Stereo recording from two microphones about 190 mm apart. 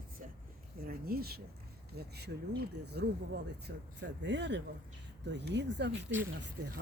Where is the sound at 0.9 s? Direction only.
50° right (ahead or behind).